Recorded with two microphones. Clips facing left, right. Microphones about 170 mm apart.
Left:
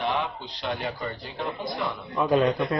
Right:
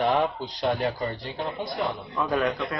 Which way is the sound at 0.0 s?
40° right (ahead or behind).